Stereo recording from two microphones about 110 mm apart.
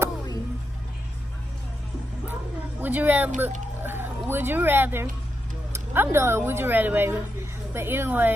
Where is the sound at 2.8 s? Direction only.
15° right (ahead or behind).